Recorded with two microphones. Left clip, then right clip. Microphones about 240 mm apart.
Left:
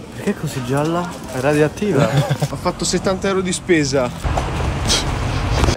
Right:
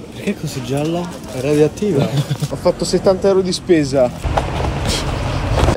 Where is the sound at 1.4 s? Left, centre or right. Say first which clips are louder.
Right 1 dB; left.